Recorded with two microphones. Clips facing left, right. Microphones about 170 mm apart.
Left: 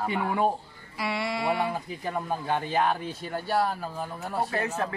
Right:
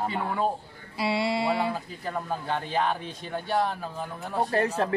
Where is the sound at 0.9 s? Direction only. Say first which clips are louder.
Right 4 dB; 30° right (ahead or behind).